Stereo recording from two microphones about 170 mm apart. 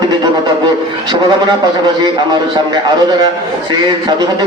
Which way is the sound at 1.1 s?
30° right (ahead or behind).